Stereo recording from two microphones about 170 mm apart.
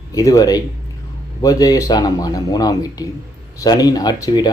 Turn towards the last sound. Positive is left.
turn(degrees=20)  # may be behind; listen again after turning